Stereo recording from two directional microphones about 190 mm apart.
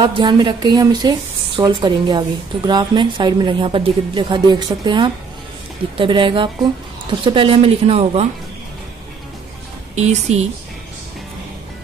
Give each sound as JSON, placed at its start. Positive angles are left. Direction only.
{"t": 0.0, "sound": "a woman's voice", "side_deg": -25}
{"t": 9.9, "sound": "speech", "side_deg": -35}